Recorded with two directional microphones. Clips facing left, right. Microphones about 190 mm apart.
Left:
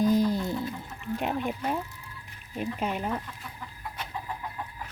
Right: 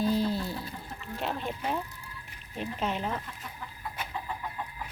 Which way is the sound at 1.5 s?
10° left (ahead or behind).